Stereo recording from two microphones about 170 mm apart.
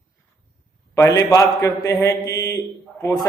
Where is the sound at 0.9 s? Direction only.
20° left (ahead or behind).